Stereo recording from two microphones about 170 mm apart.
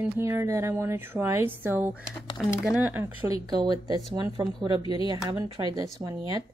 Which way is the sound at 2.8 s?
10° right (ahead or behind).